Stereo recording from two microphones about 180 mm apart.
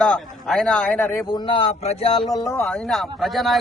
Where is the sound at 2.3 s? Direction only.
15° left (ahead or behind).